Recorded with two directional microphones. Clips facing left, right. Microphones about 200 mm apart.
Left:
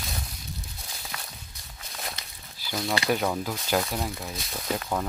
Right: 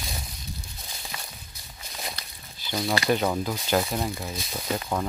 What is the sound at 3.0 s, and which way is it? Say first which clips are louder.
Speech: right 2 dB; 5° left (ahead or behind).